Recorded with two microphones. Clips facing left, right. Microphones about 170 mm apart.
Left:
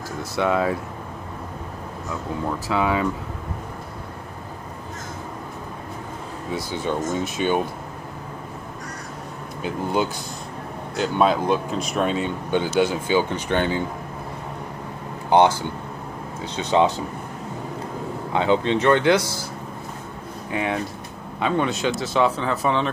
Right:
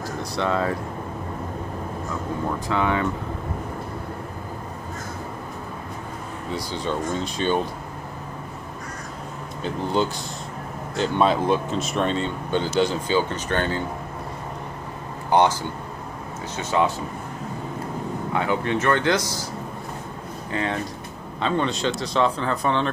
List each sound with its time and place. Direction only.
0.4 s speech: 10° left (ahead or behind)
2.7 s speech: 10° left (ahead or behind)
6.7 s speech: 15° left (ahead or behind)
11.0 s speech: 5° left (ahead or behind)
15.2 s speech: 20° left (ahead or behind)
16.5 s speech: 20° left (ahead or behind)
18.3 s speech: 20° left (ahead or behind)
20.5 s speech: 10° left (ahead or behind)